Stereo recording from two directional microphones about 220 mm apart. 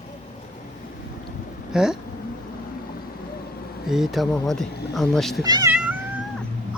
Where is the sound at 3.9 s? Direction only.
Centre (ahead or behind).